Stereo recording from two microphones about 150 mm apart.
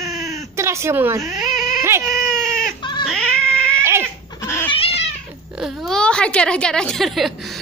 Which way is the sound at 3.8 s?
15° right (ahead or behind).